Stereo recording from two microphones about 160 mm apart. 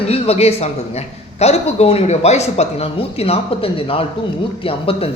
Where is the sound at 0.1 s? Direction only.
40° left (ahead or behind).